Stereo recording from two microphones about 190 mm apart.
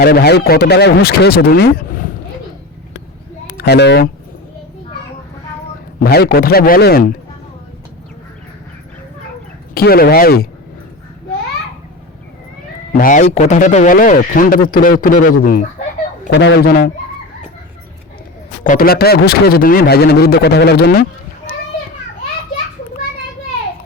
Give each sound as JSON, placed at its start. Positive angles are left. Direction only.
{"t": 0.0, "sound": "speech", "side_deg": 55}
{"t": 3.6, "sound": "speech", "side_deg": 60}
{"t": 6.0, "sound": "speech", "side_deg": 55}
{"t": 9.7, "sound": "speech", "side_deg": 50}
{"t": 12.9, "sound": "speech", "side_deg": 45}
{"t": 16.3, "sound": "speech", "side_deg": 65}
{"t": 18.6, "sound": "speech", "side_deg": 45}